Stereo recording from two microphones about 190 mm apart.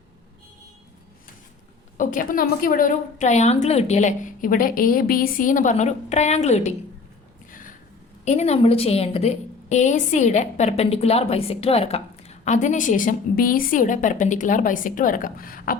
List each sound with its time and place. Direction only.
2.0 s a woman's voice: 45° left (ahead or behind)
8.2 s a woman's voice: 35° left (ahead or behind)